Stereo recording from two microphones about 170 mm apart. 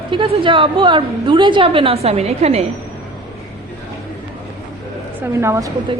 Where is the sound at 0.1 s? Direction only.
30° right (ahead or behind).